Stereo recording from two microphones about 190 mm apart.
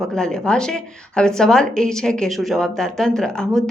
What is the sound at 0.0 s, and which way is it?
A woman's voice, 5° left (ahead or behind).